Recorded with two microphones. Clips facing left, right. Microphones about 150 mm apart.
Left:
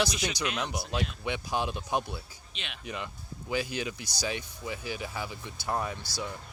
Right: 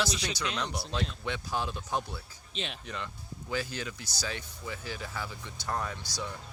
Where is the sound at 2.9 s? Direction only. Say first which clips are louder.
Left 2 dB; 15° left (ahead or behind).